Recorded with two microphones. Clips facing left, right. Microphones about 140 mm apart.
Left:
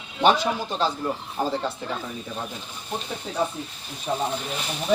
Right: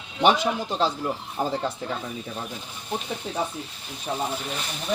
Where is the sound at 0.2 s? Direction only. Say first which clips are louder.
Even; 15° right (ahead or behind).